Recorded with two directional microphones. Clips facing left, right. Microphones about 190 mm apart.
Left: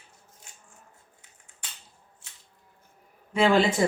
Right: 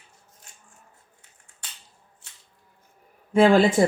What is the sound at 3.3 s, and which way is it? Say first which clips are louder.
Speech: right 5 dB; 50° right (ahead or behind).